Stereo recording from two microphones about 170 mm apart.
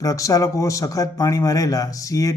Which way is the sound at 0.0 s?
20° left (ahead or behind).